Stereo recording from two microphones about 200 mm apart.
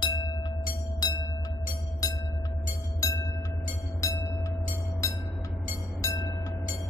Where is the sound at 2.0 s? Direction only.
15° left (ahead or behind).